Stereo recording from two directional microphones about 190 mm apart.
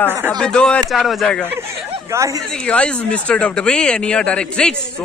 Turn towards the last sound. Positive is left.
turn(degrees=5)  # may be behind; listen again after turning